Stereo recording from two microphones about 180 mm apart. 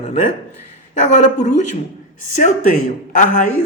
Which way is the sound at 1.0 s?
40° left (ahead or behind).